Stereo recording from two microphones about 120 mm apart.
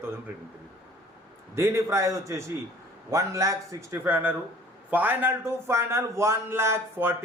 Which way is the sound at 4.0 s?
15° right (ahead or behind).